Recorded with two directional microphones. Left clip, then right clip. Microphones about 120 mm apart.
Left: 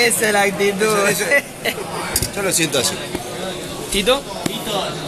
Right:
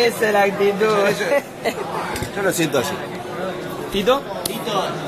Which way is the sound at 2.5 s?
55° right (ahead or behind).